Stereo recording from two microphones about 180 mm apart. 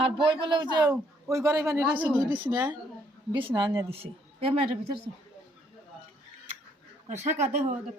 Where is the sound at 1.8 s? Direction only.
5° right (ahead or behind).